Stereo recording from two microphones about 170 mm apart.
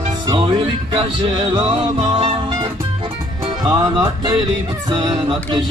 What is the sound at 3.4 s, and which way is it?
Music, 25° right (ahead or behind).